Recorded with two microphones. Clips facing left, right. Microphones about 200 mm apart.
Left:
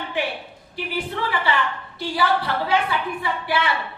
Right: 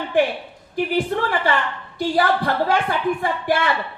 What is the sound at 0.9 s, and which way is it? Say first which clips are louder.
A woman's voice: right 4 dB; 45° right (ahead or behind).